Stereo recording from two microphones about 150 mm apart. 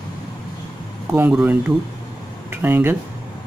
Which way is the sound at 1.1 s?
10° right (ahead or behind).